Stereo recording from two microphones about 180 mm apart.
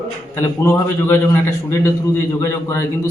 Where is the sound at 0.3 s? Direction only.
15° left (ahead or behind).